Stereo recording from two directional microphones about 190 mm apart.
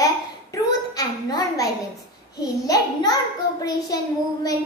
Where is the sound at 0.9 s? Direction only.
20° left (ahead or behind).